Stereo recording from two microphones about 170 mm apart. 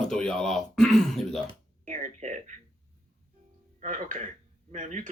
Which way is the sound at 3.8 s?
50° right (ahead or behind).